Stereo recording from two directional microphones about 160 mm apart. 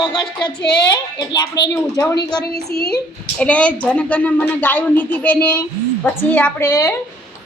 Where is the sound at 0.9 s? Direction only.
25° left (ahead or behind).